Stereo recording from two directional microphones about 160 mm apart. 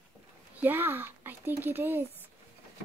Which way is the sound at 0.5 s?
10° right (ahead or behind).